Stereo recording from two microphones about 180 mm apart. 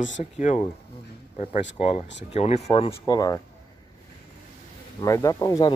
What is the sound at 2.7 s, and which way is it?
Speech, 25° left (ahead or behind).